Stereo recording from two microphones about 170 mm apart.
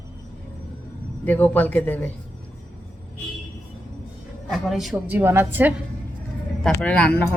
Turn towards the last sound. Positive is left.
turn(degrees=5)  # may be behind; listen again after turning